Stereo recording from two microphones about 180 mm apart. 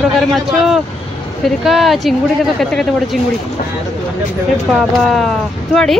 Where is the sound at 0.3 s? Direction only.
Centre (ahead or behind).